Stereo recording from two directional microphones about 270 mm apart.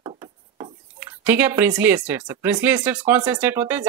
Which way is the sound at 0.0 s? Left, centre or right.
Centre.